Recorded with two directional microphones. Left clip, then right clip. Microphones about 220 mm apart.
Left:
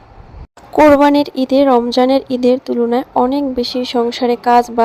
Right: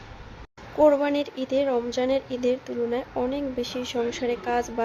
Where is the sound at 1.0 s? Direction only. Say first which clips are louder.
Left 14 dB; 35° left (ahead or behind).